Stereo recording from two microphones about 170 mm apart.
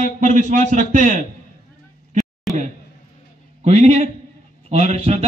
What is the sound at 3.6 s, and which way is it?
A man's voice, 40° right (ahead or behind).